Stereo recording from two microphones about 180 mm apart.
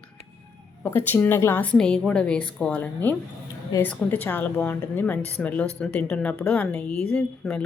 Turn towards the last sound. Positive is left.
turn(degrees=5)  # may be behind; listen again after turning